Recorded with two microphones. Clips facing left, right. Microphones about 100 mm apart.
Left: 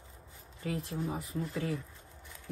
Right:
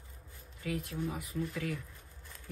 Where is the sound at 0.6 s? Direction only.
30° left (ahead or behind).